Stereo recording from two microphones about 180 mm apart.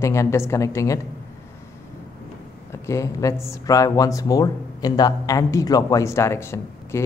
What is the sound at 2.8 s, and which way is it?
Speech, 15° left (ahead or behind).